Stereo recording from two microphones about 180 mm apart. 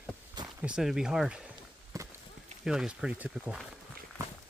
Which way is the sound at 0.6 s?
5° right (ahead or behind).